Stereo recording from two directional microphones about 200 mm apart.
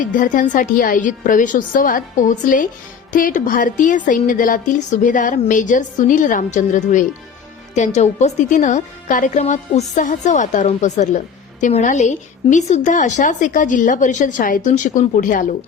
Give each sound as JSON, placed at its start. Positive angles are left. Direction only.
{"t": 0.0, "sound": "a woman's voice", "side_deg": 40}